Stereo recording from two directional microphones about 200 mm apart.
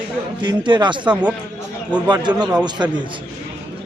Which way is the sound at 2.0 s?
20° right (ahead or behind).